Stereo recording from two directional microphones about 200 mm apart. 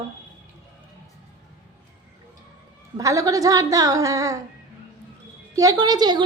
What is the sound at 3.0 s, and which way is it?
A woman's voice, 15° right (ahead or behind).